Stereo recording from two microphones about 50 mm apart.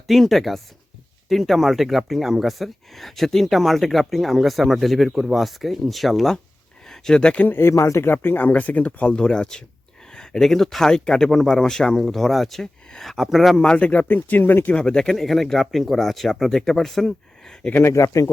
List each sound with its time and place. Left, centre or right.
0.1 s speech: centre
7.4 s speech: left
7.7 s speech: left
8.0 s speech: left; by 11.3 s centre
11.3 s speech: centre
13.6 s speech: centre
14.1 s speech: left
14.7 s speech: centre
15.1 s speech: centre
17.8 s speech: left